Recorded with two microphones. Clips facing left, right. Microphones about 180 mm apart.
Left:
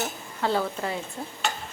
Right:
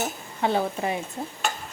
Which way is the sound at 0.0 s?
20° right (ahead or behind).